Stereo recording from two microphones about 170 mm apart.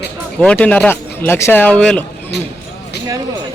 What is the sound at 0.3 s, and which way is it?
Speech, 5° left (ahead or behind).